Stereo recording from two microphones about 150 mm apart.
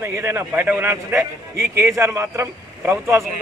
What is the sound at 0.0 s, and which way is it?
A man's voice, 15° right (ahead or behind).